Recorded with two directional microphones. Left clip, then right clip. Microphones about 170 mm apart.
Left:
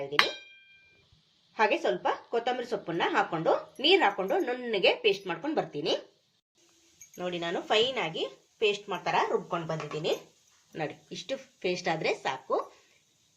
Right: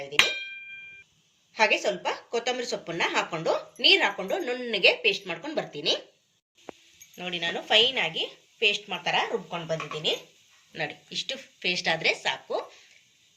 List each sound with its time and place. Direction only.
1.5 s speech: 45° left (ahead or behind)
7.2 s a woman's voice: 60° left (ahead or behind)
10.7 s a woman's voice: 55° left (ahead or behind)